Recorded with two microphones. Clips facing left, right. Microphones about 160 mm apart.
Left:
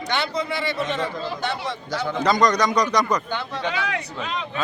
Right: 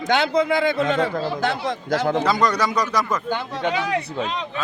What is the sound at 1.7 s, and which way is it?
Speech, 50° right (ahead or behind).